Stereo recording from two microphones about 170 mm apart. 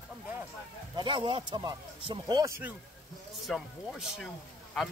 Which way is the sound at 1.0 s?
30° right (ahead or behind).